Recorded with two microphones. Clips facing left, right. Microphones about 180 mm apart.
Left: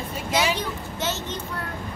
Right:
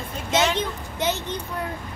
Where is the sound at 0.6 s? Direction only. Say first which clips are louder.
Right 2 dB; 15° right (ahead or behind).